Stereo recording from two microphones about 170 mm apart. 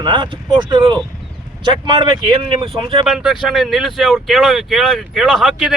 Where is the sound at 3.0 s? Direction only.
Centre (ahead or behind).